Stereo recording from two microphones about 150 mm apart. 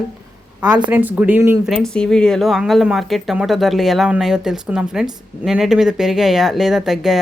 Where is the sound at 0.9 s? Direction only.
10° right (ahead or behind).